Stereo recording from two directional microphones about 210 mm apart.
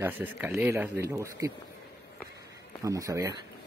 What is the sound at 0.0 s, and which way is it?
Speech, 10° right (ahead or behind).